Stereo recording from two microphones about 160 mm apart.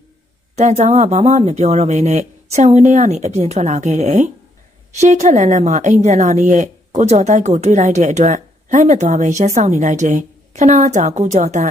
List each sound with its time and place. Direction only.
0.6 s a woman's voice: 45° right (ahead or behind)